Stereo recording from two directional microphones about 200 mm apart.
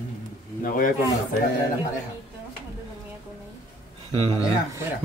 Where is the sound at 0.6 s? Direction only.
45° left (ahead or behind).